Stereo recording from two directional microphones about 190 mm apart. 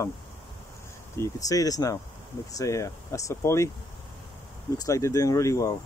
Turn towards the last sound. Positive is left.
turn(degrees=15)  # may be behind; listen again after turning